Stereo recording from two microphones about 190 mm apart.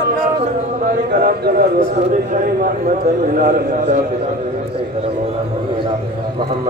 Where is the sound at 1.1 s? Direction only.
60° right (ahead or behind).